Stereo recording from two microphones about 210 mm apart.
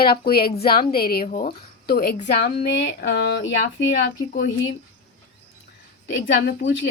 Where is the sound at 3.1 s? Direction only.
50° left (ahead or behind).